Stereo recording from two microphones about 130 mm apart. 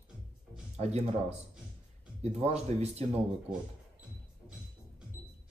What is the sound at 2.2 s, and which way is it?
Speech, 55° right (ahead or behind).